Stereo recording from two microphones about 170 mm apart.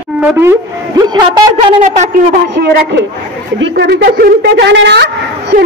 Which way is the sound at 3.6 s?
75° right (ahead or behind).